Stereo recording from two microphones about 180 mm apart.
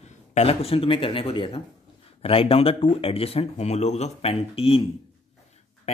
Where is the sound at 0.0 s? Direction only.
40° left (ahead or behind).